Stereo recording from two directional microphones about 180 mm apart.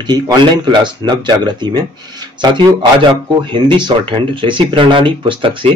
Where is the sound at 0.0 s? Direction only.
25° right (ahead or behind).